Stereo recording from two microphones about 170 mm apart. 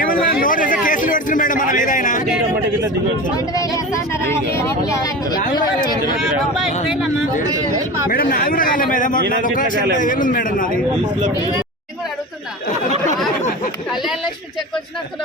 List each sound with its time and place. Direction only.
0.0 s a man's voice: 55° left (ahead or behind)
3.3 s speech: 20° left (ahead or behind)
6.1 s speech: centre (ahead or behind)
8.1 s a man's voice: 60° left (ahead or behind)